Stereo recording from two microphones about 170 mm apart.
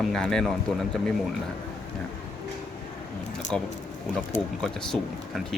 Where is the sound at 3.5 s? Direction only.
5° left (ahead or behind).